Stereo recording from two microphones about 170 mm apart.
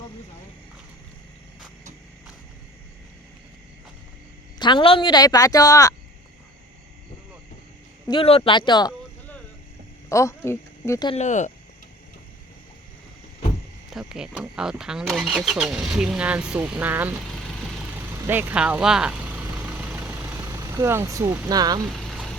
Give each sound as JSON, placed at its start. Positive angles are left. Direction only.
{"t": 4.6, "sound": "a woman's voice", "side_deg": 30}
{"t": 8.0, "sound": "a woman's voice", "side_deg": 30}
{"t": 10.1, "sound": "speech", "side_deg": 15}
{"t": 11.1, "sound": "speech", "side_deg": 45}
{"t": 13.9, "sound": "speech", "side_deg": -5}
{"t": 18.1, "sound": "vehicle", "side_deg": -10}
{"t": 21.8, "sound": "vehicle", "side_deg": 0}